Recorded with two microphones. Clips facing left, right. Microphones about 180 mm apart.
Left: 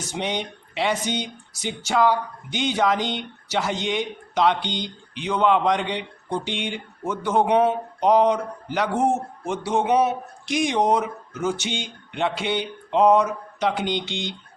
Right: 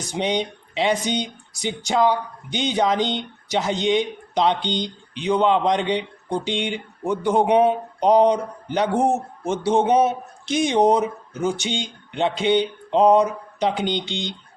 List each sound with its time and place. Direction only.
0.0 s speech: 15° right (ahead or behind)